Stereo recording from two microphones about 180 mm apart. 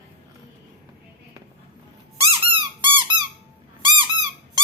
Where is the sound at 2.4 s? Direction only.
30° right (ahead or behind).